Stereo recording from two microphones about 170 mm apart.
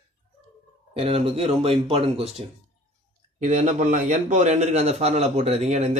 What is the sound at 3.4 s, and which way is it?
A man's voice, 45° right (ahead or behind).